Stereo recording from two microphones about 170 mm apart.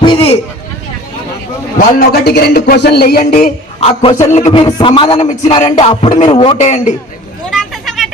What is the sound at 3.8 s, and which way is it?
Speech, 40° left (ahead or behind).